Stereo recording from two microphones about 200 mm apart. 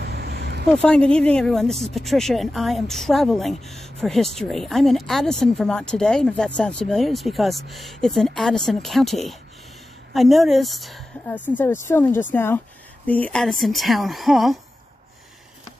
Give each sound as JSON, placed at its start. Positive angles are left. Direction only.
{"t": 0.0, "sound": "vehicle", "side_deg": -55}
{"t": 0.7, "sound": "speech", "side_deg": 5}